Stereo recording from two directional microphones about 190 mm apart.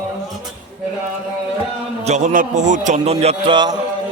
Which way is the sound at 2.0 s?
40° right (ahead or behind).